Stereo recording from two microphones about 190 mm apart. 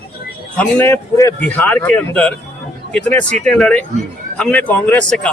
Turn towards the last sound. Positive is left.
turn(degrees=5)  # may be behind; listen again after turning